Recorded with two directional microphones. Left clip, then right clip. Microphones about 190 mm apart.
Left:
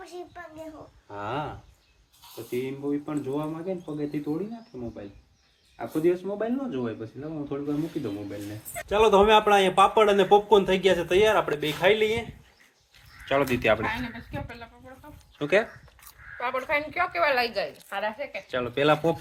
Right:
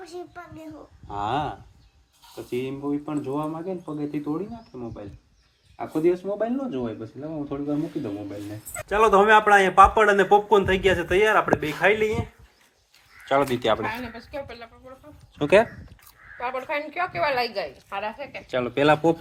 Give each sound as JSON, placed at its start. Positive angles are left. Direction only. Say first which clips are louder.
{"t": 0.0, "sound": "a child's voice", "louder": "right 2 dB", "side_deg": 0}
{"t": 1.1, "sound": "speech", "louder": "right 6 dB", "side_deg": -40}
{"t": 2.5, "sound": "speech", "louder": "right 2 dB", "side_deg": -35}
{"t": 2.8, "sound": "speech", "louder": "right 2 dB", "side_deg": -20}
{"t": 5.9, "sound": "speech", "louder": "right 2 dB", "side_deg": -30}
{"t": 8.9, "sound": "a man's voice", "louder": "right 2 dB", "side_deg": -15}
{"t": 13.2, "sound": "a man's voice", "louder": "right 2 dB", "side_deg": -5}
{"t": 13.8, "sound": "speech", "louder": "even", "side_deg": -50}
{"t": 15.4, "sound": "speech", "louder": "right 6 dB", "side_deg": -35}
{"t": 16.4, "sound": "a man's voice", "louder": "left 1 dB", "side_deg": 5}
{"t": 18.4, "sound": "speech", "louder": "right 3 dB", "side_deg": -35}